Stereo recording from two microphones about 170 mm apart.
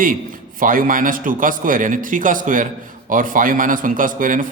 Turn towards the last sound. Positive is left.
turn(degrees=-55)  # may be behind; listen again after turning